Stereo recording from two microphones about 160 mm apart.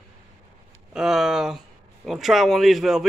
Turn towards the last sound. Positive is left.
turn(degrees=0)  # may be behind; listen again after turning